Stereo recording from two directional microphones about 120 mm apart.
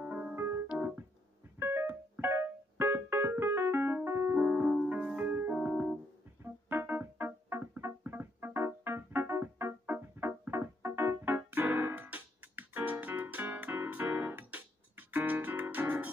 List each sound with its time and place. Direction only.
0.0 s keyboard: 10° right (ahead or behind)
4.7 s music: 10° right (ahead or behind)